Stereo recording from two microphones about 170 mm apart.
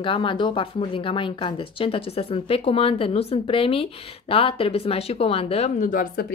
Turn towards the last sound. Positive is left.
turn(degrees=55)  # may be behind; listen again after turning